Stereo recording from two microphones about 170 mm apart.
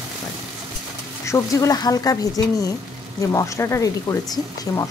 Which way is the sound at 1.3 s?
20° left (ahead or behind).